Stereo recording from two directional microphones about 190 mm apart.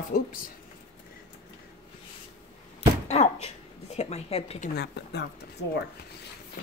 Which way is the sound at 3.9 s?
35° left (ahead or behind).